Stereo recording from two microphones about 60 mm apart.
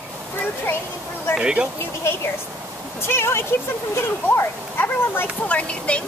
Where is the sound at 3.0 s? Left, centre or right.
Left.